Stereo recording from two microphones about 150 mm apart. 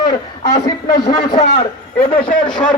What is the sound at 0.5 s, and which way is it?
Speech, 25° left (ahead or behind).